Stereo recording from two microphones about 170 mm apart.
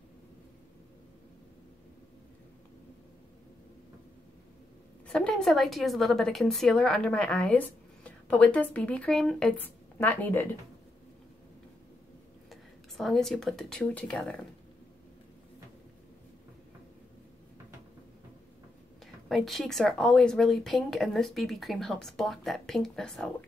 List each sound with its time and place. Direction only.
5.0 s a woman's voice: 5° left (ahead or behind)
12.4 s speech: centre (ahead or behind)
19.2 s a woman's voice: centre (ahead or behind)